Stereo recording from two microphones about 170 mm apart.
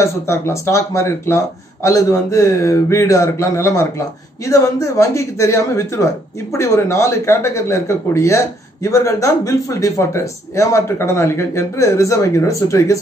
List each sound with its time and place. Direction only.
0.0 s speech: 15° left (ahead or behind)